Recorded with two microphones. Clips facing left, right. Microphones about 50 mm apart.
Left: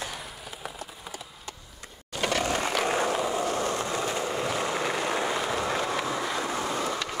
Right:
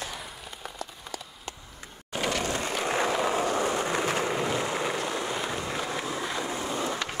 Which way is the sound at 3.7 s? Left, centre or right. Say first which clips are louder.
Right 2 dB; right.